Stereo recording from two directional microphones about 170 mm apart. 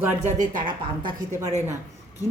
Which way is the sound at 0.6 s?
25° right (ahead or behind).